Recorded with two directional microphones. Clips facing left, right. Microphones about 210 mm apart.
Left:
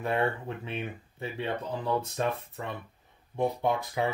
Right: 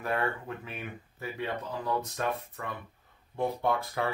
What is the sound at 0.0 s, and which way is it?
Speech, 25° left (ahead or behind).